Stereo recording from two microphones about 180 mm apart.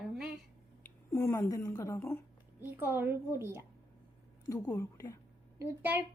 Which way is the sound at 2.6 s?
10° right (ahead or behind).